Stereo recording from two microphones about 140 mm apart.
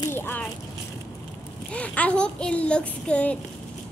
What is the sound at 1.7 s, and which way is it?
A child's voice, 10° left (ahead or behind).